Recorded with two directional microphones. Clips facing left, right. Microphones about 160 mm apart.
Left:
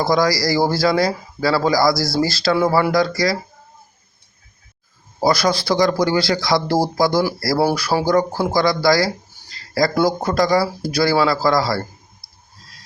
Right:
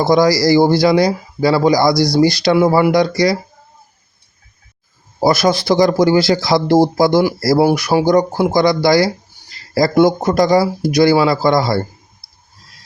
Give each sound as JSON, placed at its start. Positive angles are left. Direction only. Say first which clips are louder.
{"t": 0.0, "sound": "speech", "louder": "right 5 dB", "side_deg": -25}
{"t": 5.2, "sound": "speech", "louder": "right 4 dB", "side_deg": -25}